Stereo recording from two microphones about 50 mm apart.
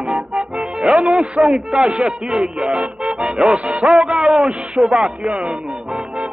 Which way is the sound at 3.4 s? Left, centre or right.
Right.